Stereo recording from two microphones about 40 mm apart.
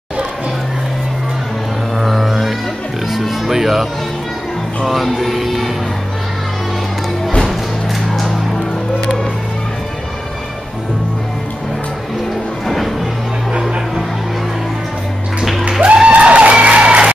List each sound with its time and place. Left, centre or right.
2.0 s music: centre
4.8 s speech: centre
12.6 s music: centre
15.8 s music: right